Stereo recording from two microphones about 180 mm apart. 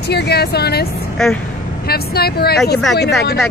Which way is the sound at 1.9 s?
60° left (ahead or behind).